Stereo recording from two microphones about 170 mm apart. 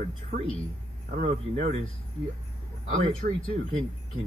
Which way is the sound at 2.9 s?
45° right (ahead or behind).